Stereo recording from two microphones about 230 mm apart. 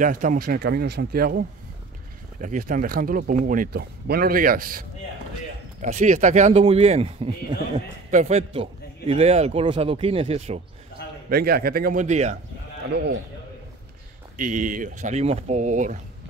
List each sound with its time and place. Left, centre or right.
0.0 s speech: right
2.4 s a man's voice: right
11.2 s speech: right
12.9 s a man's voice: right
14.3 s speech: right